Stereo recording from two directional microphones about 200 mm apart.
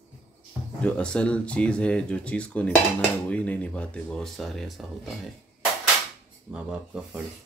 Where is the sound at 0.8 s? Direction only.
5° left (ahead or behind).